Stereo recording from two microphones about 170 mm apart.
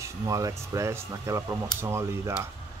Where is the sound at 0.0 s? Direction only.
20° right (ahead or behind).